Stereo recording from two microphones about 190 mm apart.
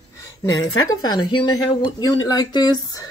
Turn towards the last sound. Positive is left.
turn(degrees=20)  # may be behind; listen again after turning